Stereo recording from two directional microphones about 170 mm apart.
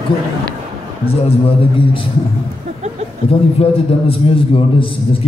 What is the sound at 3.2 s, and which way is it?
A man's voice, 35° left (ahead or behind).